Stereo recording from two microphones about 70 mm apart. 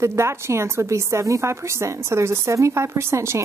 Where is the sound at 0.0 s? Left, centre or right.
Right.